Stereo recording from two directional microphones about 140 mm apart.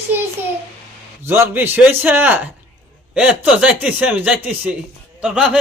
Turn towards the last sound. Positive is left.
turn(degrees=-5)  # may be behind; listen again after turning